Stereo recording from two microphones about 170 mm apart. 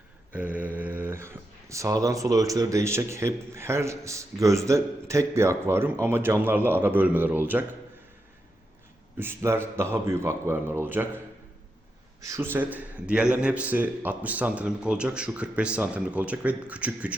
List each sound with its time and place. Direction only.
0.3 s speech: 10° right (ahead or behind)
9.1 s speech: 15° right (ahead or behind)
12.2 s speech: 15° right (ahead or behind)